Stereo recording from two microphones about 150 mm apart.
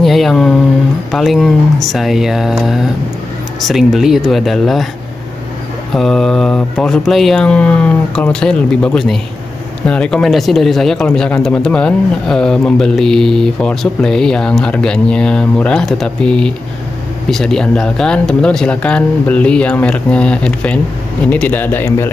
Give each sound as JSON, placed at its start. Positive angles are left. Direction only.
{"t": 0.0, "sound": "speech", "side_deg": 0}
{"t": 5.9, "sound": "speech", "side_deg": 0}